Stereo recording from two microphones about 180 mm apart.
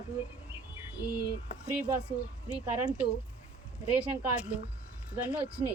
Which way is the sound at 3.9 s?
5° right (ahead or behind).